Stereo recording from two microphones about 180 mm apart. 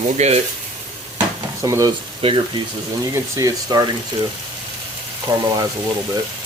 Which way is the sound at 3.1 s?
15° right (ahead or behind).